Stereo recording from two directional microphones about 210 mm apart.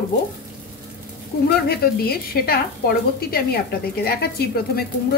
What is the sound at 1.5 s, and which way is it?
A woman's voice, 45° left (ahead or behind).